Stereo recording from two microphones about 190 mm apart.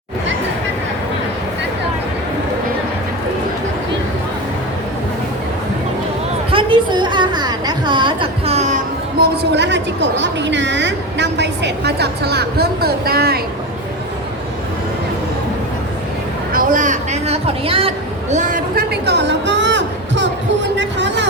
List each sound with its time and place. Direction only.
6.5 s a sound: 25° right (ahead or behind)
9.1 s a woman's voice: 65° right (ahead or behind)
16.5 s speech: 45° right (ahead or behind); by 21.2 s 70° right (ahead or behind)